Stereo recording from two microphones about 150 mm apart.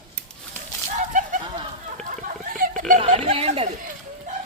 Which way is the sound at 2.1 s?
65° right (ahead or behind).